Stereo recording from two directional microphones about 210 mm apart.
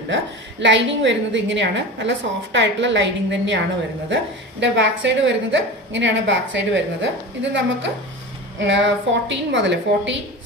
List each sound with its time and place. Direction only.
0.1 s a woman's voice: 60° right (ahead or behind)